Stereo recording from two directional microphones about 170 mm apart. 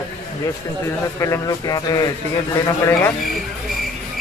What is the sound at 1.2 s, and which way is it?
Speech, 20° left (ahead or behind).